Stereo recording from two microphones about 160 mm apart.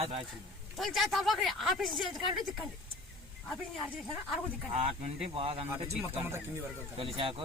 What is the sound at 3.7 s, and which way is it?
Speech, centre (ahead or behind).